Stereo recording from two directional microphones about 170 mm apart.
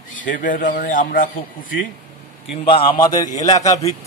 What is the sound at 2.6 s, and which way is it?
A man's voice, 30° left (ahead or behind).